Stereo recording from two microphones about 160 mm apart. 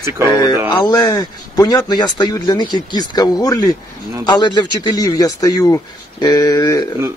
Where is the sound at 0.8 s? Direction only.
25° left (ahead or behind).